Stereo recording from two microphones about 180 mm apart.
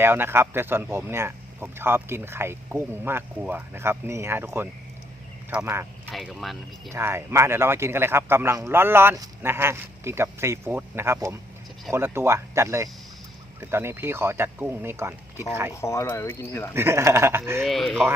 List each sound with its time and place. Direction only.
0.0 s speech: 10° right (ahead or behind)
6.1 s speech: centre (ahead or behind)
6.9 s speech: 15° right (ahead or behind)
15.7 s speech: 15° left (ahead or behind)
16.7 s speech: 15° right (ahead or behind)
17.7 s speech: centre (ahead or behind)